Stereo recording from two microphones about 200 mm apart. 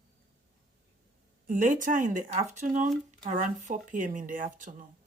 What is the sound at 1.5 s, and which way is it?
Speech, 40° right (ahead or behind).